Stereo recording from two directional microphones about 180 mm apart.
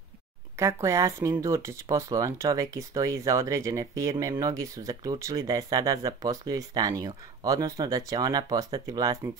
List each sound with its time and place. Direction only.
0.6 s speech: 15° right (ahead or behind)